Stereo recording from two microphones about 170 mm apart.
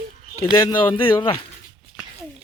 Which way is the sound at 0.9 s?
30° left (ahead or behind).